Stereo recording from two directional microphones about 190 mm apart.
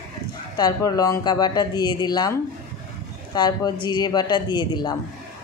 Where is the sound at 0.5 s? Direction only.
20° left (ahead or behind).